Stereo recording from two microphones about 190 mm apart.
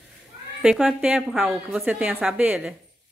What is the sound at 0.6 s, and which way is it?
A woman's voice, 5° right (ahead or behind).